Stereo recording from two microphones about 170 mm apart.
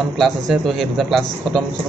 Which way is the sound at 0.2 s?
Centre (ahead or behind).